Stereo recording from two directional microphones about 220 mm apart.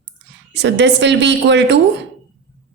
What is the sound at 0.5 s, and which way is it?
A woman's voice, 50° right (ahead or behind).